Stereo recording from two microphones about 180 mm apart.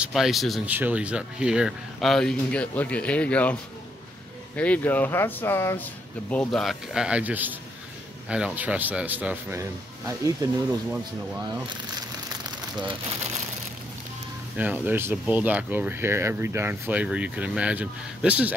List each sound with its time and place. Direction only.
0.0 s speech: centre (ahead or behind)
4.6 s speech: 10° left (ahead or behind)
6.5 s speech: centre (ahead or behind); by 10.5 s 15° right (ahead or behind)
12.3 s a sound: 25° right (ahead or behind)
14.6 s speech: 10° right (ahead or behind)